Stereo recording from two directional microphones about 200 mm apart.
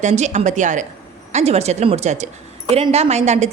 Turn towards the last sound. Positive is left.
turn(degrees=-35)  # may be behind; listen again after turning